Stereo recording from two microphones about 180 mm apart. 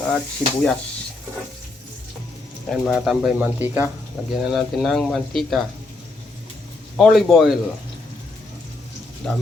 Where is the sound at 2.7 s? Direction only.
Centre (ahead or behind).